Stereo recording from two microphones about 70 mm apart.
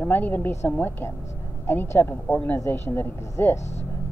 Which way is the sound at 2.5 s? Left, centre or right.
Left.